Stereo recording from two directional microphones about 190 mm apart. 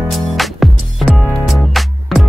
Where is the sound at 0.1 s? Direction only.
Centre (ahead or behind).